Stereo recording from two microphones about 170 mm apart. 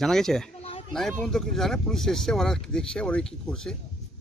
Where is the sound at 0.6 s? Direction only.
35° left (ahead or behind).